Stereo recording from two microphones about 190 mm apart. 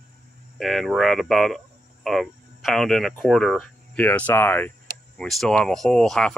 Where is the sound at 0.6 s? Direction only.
Centre (ahead or behind).